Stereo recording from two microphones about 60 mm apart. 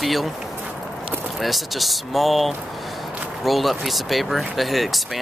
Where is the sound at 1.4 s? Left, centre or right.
Centre.